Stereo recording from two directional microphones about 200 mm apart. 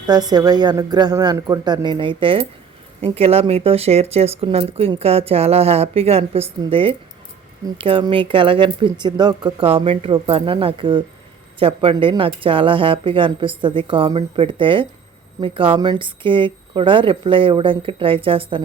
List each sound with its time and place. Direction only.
0.1 s speech: 20° right (ahead or behind)